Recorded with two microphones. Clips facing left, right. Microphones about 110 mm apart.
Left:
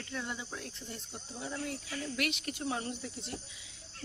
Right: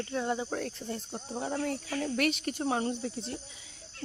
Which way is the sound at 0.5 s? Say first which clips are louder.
Right 9 dB; 50° right (ahead or behind).